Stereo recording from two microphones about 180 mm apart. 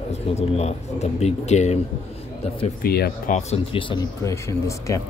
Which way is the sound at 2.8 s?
60° left (ahead or behind).